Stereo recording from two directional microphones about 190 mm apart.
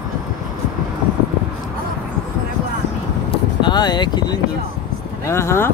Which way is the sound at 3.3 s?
25° left (ahead or behind).